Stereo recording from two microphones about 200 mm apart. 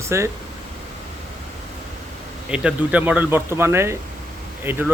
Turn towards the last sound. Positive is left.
turn(degrees=-10)  # may be behind; listen again after turning